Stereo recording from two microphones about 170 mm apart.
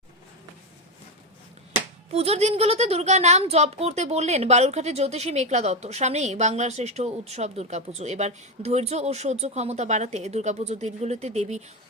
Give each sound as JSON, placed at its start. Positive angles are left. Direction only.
{"t": 2.1, "sound": "a woman's voice", "side_deg": -35}